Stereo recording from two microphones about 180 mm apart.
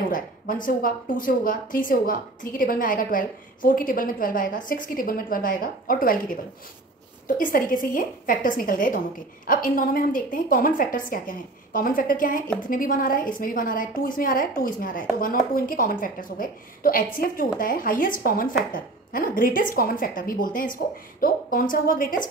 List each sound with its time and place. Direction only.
0.7 s a woman's voice: 50° left (ahead or behind)